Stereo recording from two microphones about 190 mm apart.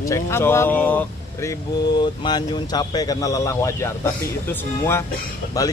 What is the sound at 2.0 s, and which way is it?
A man's voice, 25° left (ahead or behind).